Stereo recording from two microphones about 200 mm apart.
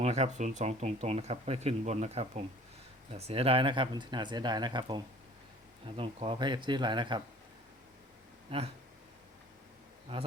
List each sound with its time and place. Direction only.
0.0 s speech: 35° right (ahead or behind)
8.4 s speech: 30° right (ahead or behind)
10.1 s speech: 25° right (ahead or behind)